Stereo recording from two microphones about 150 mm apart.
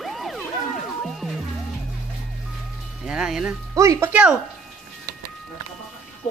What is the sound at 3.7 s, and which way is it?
Speech, 20° right (ahead or behind).